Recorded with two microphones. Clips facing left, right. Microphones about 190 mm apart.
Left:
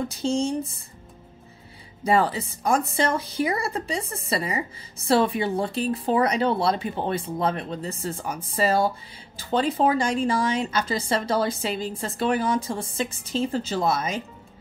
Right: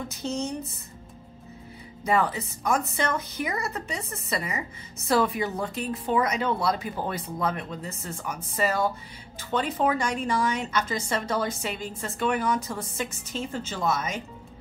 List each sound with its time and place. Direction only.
0.1 s speech: 30° left (ahead or behind)
2.0 s speech: 30° left (ahead or behind)